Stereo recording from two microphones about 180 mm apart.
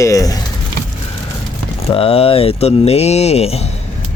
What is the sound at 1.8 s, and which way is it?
Speech, 30° left (ahead or behind).